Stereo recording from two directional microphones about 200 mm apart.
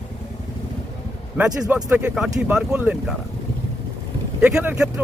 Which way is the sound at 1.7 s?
5° right (ahead or behind).